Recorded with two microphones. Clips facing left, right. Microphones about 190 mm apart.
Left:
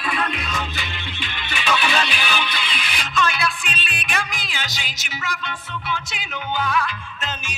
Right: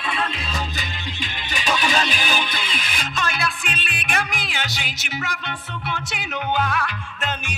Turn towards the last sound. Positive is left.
turn(degrees=-60)  # may be behind; listen again after turning